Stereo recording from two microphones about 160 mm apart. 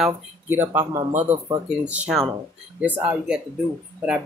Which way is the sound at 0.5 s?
15° right (ahead or behind).